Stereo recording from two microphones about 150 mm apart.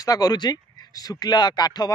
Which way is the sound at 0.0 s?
25° left (ahead or behind).